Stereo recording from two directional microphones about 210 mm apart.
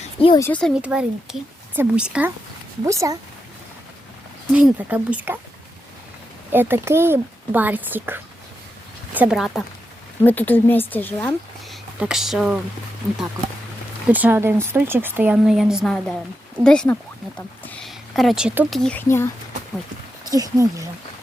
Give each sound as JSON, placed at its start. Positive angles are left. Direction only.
{"t": 0.2, "sound": "speech", "side_deg": 25}
{"t": 0.4, "sound": "speech", "side_deg": 5}
{"t": 0.8, "sound": "speech", "side_deg": -5}
{"t": 4.5, "sound": "speech", "side_deg": -5}
{"t": 6.5, "sound": "speech", "side_deg": -10}
{"t": 14.1, "sound": "speech", "side_deg": -10}
{"t": 20.2, "sound": "speech", "side_deg": -15}